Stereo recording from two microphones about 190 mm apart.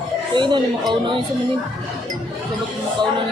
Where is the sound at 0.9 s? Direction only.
25° right (ahead or behind).